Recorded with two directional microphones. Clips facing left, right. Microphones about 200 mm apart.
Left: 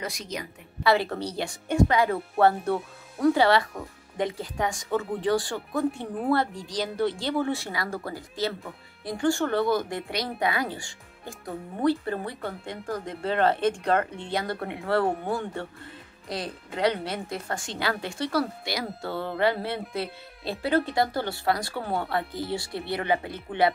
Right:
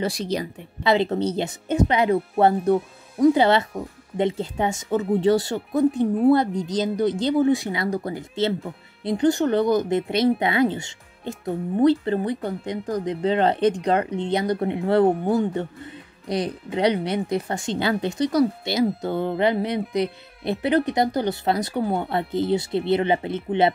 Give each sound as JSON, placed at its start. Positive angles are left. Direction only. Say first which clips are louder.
{"t": 0.0, "sound": "a woman's voice", "louder": "right 9 dB", "side_deg": -30}
{"t": 0.8, "sound": "speech", "louder": "right 4 dB", "side_deg": -20}